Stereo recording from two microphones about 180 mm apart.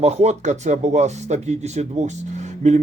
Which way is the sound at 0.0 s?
35° right (ahead or behind).